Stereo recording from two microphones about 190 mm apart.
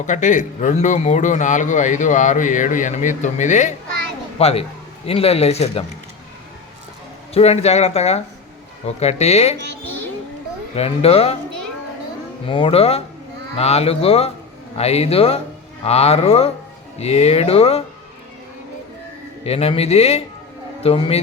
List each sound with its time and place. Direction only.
0.0 s a man's voice: 40° left (ahead or behind)
7.3 s a man's voice: 35° left (ahead or behind)
10.8 s a man's voice: 30° left (ahead or behind)
12.5 s a man's voice: 25° left (ahead or behind)
19.5 s a man's voice: 30° left (ahead or behind)